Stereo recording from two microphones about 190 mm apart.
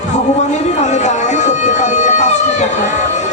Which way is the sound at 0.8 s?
40° left (ahead or behind).